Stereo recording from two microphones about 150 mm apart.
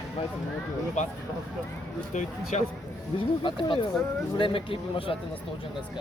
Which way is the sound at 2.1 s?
55° left (ahead or behind).